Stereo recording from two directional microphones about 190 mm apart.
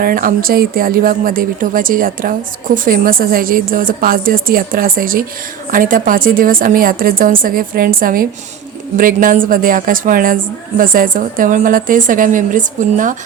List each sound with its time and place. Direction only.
0.0 s speech: 50° right (ahead or behind)